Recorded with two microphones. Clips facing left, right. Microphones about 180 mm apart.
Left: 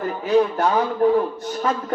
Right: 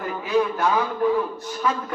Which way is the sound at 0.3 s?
40° left (ahead or behind).